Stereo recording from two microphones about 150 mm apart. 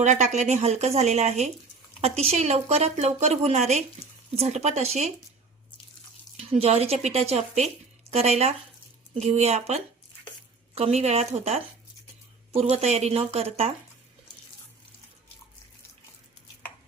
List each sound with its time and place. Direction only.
0.0 s a woman's voice: 50° right (ahead or behind)
6.3 s a woman's voice: 45° right (ahead or behind)